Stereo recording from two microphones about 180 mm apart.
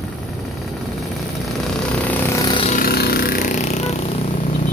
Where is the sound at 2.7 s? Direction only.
55° left (ahead or behind).